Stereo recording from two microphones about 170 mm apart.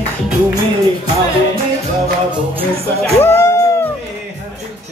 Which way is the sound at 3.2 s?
15° left (ahead or behind).